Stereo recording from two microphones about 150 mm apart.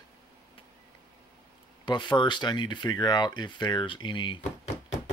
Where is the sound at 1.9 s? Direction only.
30° left (ahead or behind).